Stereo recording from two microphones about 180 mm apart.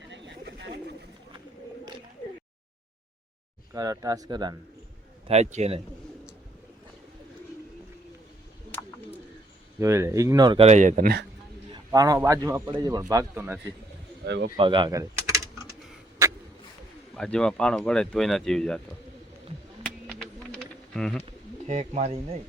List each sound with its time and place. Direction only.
0.1 s bird: 75° right (ahead or behind)
3.8 s a man's voice: 20° right (ahead or behind)
5.3 s speech: 40° right (ahead or behind)
9.8 s speech: 15° right (ahead or behind)
10.7 s speech: 45° right (ahead or behind)
11.9 s a man's voice: 20° right (ahead or behind)
14.3 s speech: 75° right (ahead or behind)
14.5 s speech: 25° right (ahead or behind)
16.2 s vehicle: 15° right (ahead or behind)
17.2 s speech: 5° left (ahead or behind)
20.1 s bird: 5° left (ahead or behind)
21.7 s speech: 40° right (ahead or behind)